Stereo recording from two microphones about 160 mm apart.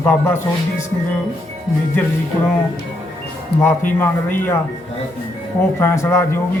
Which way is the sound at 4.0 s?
10° left (ahead or behind).